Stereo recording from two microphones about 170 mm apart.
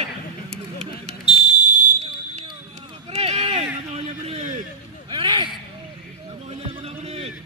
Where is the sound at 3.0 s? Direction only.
35° right (ahead or behind).